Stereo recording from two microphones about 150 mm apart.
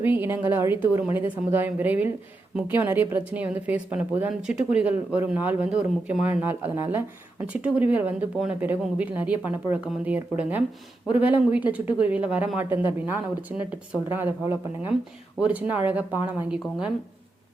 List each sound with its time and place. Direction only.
0.0 s a woman's voice: 15° right (ahead or behind)